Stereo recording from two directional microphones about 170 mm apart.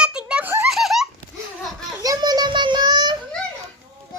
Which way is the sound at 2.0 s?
20° right (ahead or behind).